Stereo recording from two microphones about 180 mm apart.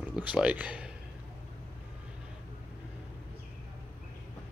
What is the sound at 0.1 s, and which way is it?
Speech, 5° right (ahead or behind).